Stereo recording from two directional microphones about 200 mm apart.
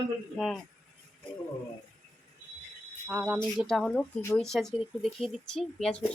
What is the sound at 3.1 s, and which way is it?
Speech, 10° right (ahead or behind).